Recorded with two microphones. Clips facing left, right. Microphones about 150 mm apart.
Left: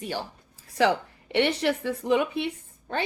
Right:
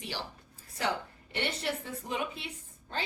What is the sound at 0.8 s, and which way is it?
A woman's voice, 80° left.